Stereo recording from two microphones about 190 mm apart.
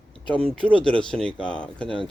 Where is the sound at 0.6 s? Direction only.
25° left (ahead or behind).